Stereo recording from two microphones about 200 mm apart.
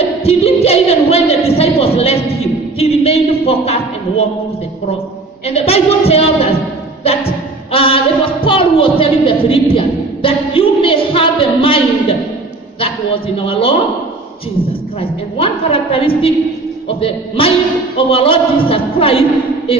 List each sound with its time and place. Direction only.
0.3 s a sound: 30° left (ahead or behind)
5.5 s a woman's voice: 30° left (ahead or behind)
15.0 s a man's voice: 25° left (ahead or behind)